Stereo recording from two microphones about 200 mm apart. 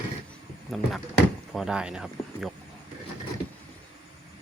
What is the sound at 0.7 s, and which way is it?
Speech, centre (ahead or behind).